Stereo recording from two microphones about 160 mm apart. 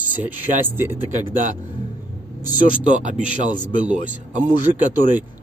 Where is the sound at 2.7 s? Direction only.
50° right (ahead or behind).